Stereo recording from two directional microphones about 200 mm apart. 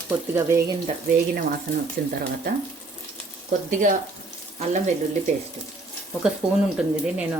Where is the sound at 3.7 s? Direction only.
40° right (ahead or behind).